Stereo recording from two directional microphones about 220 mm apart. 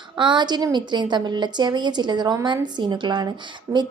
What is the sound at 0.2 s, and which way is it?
A woman's voice, 20° right (ahead or behind).